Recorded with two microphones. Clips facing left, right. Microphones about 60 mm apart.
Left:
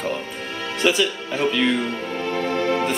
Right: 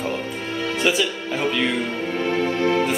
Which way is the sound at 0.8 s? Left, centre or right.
Centre.